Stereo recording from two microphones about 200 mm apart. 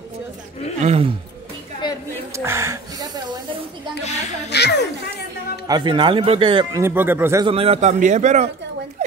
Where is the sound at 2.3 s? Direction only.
15° right (ahead or behind).